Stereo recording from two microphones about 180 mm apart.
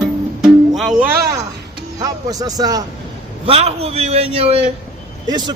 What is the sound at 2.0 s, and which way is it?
Speech, 20° right (ahead or behind).